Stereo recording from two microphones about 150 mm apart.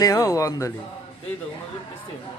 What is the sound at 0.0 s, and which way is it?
Speech, 20° left (ahead or behind).